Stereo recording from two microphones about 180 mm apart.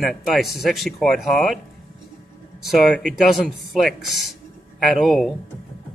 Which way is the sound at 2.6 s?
Centre (ahead or behind).